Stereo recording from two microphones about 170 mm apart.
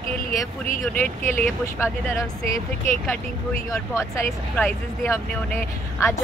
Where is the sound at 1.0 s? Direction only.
10° left (ahead or behind).